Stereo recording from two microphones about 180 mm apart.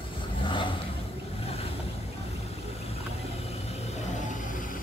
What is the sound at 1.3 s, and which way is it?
Boat, 35° left (ahead or behind).